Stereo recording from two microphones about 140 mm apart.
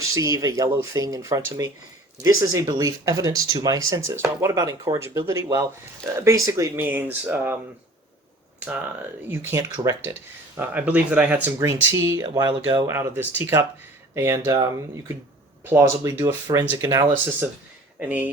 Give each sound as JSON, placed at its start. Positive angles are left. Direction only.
{"t": 0.0, "sound": "speech", "side_deg": -25}
{"t": 9.3, "sound": "speech", "side_deg": -15}
{"t": 12.9, "sound": "speech", "side_deg": -15}
{"t": 18.0, "sound": "speech", "side_deg": -10}